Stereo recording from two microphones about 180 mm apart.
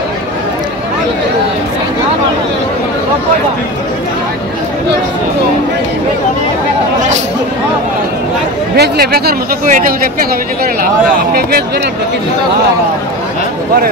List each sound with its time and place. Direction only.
8.7 s speech: 65° right (ahead or behind)